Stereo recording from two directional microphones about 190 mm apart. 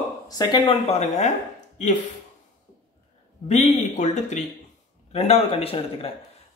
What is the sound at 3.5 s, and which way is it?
A man's voice, 35° left (ahead or behind).